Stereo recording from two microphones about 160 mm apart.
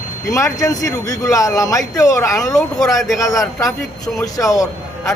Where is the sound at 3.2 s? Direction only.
20° left (ahead or behind).